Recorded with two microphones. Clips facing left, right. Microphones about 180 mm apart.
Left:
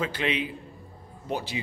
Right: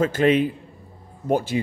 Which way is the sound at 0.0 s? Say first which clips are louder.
Right 10 dB; 45° right (ahead or behind).